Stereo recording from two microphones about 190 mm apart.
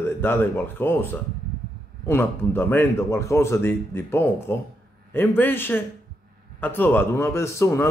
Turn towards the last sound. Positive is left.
turn(degrees=15)  # may be behind; listen again after turning